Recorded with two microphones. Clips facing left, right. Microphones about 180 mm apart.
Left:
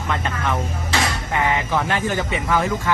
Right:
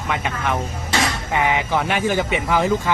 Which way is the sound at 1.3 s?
20° right (ahead or behind).